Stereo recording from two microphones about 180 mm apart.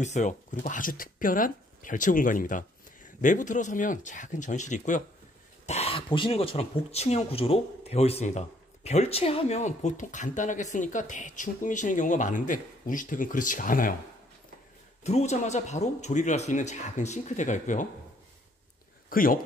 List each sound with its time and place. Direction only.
0.0 s speech: 40° left (ahead or behind)
15.0 s speech: 40° left (ahead or behind)
19.0 s speech: 50° left (ahead or behind)